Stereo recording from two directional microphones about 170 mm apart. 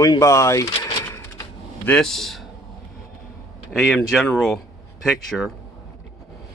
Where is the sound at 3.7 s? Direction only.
Centre (ahead or behind).